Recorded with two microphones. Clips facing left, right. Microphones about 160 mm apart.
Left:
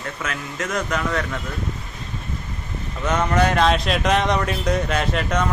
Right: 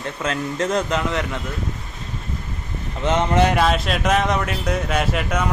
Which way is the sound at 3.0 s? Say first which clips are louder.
Right 2 dB; 25° right (ahead or behind).